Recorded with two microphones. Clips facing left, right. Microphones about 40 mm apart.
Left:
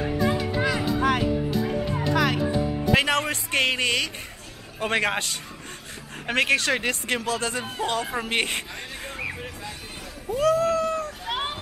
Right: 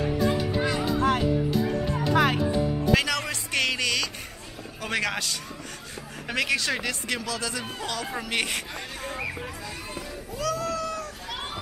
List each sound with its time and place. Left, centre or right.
0.0 s music: centre
2.3 s speech: centre
2.9 s speech: left
10.3 s cat: left